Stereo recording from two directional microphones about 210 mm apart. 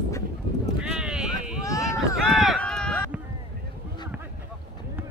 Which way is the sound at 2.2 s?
Centre (ahead or behind).